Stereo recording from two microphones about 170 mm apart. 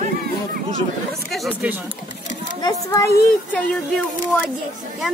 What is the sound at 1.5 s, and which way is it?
Speech, 10° right (ahead or behind).